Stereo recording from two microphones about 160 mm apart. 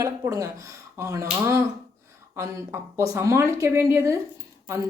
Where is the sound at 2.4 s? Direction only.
20° right (ahead or behind).